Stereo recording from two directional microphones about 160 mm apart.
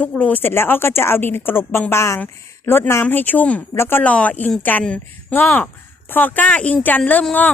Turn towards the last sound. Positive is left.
turn(degrees=10)  # may be behind; listen again after turning